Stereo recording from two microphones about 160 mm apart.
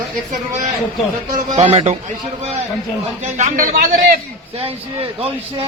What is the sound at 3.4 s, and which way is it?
Speech, 60° right (ahead or behind).